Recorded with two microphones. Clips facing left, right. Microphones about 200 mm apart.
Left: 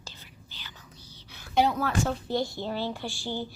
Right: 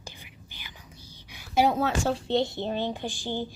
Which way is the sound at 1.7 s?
30° right (ahead or behind).